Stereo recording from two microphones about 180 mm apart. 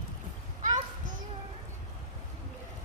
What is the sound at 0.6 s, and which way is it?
Children playing, 45° right (ahead or behind).